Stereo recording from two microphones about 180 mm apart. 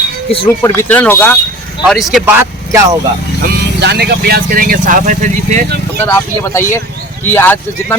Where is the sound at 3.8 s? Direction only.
65° right (ahead or behind); by 5.6 s 45° right (ahead or behind).